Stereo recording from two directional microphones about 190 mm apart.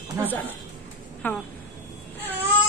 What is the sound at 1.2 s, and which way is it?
Speech, 10° left (ahead or behind).